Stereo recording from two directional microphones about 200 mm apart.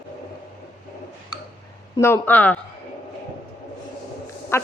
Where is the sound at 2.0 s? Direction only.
10° left (ahead or behind).